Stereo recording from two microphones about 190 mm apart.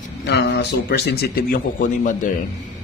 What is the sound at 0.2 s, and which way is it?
Speech, 60° left (ahead or behind).